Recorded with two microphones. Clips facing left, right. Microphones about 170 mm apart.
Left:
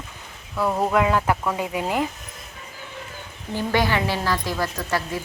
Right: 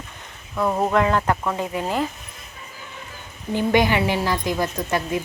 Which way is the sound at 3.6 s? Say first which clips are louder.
Right 3 dB; 20° right (ahead or behind).